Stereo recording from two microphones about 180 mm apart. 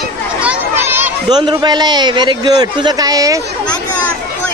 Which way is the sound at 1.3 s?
25° right (ahead or behind).